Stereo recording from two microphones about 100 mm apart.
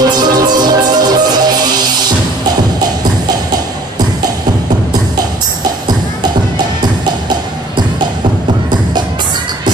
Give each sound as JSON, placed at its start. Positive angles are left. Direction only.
{"t": 0.0, "sound": "music", "side_deg": -45}